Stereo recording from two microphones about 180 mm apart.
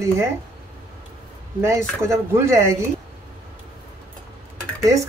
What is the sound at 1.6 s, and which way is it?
Speech, 15° right (ahead or behind).